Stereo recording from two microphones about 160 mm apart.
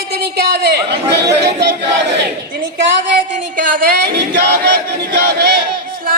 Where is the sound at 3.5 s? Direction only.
75° right (ahead or behind).